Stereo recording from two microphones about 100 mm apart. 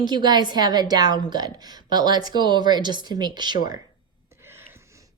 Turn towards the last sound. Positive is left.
turn(degrees=-30)  # may be behind; listen again after turning